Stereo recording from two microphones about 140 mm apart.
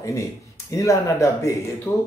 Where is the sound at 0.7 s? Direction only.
20° left (ahead or behind).